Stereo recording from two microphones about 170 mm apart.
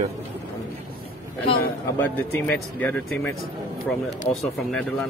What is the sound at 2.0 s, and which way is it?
Speech, 10° left (ahead or behind).